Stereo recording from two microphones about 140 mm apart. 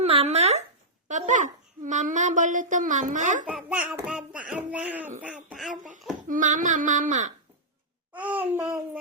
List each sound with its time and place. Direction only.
0.0 s a sound: 45° right (ahead or behind)
1.0 s a child's voice: 60° right (ahead or behind)
3.4 s speech: 10° right (ahead or behind)
6.2 s a child's voice: 65° right (ahead or behind)
8.1 s speech: 10° right (ahead or behind)